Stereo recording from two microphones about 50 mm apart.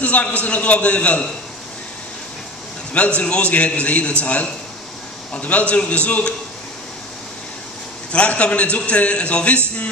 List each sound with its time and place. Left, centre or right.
0.0 s a man's voice: left
3.2 s a man's voice: left
8.1 s a man's voice: left